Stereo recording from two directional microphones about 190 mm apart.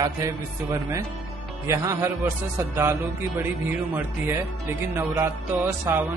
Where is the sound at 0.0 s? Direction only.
15° right (ahead or behind).